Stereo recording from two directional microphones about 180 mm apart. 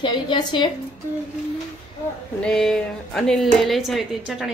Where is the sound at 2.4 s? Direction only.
5° left (ahead or behind).